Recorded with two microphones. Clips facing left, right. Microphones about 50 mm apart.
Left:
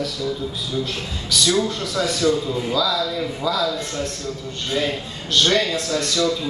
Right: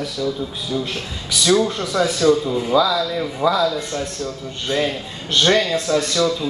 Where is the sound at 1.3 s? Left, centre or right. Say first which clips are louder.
Right 3 dB; right.